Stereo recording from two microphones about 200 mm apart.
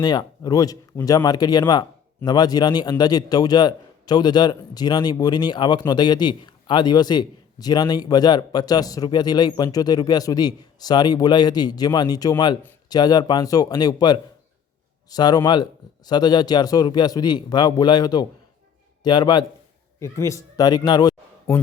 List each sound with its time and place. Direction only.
0.0 s a man's voice: 20° left (ahead or behind)